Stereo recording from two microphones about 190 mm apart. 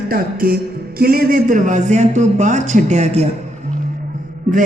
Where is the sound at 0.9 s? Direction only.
50° right (ahead or behind); by 3.3 s 35° right (ahead or behind).